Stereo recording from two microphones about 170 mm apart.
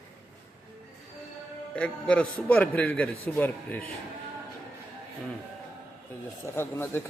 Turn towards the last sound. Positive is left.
turn(degrees=15)  # may be behind; listen again after turning